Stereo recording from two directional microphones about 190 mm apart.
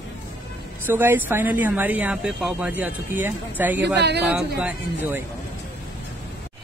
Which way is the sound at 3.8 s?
60° right (ahead or behind).